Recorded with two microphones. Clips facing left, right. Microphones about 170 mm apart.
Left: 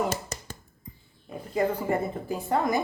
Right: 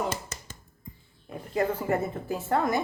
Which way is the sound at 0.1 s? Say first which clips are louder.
Left 2 dB; 35° left (ahead or behind).